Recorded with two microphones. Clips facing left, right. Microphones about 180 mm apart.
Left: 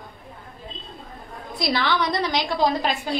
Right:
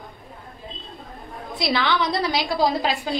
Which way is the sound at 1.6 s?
Centre (ahead or behind).